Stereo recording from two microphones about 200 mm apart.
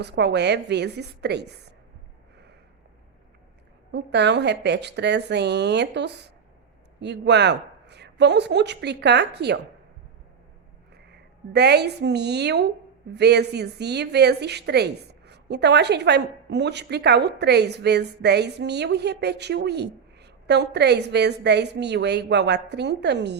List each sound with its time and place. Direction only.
0.0 s a woman's voice: 60° right (ahead or behind)
3.9 s a woman's voice: 60° right (ahead or behind)
11.5 s a woman's voice: 55° right (ahead or behind)